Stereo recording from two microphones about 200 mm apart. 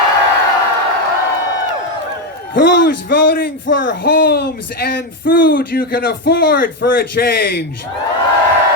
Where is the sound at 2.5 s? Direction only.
50° left (ahead or behind).